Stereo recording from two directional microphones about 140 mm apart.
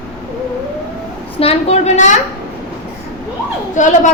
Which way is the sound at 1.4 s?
45° left (ahead or behind).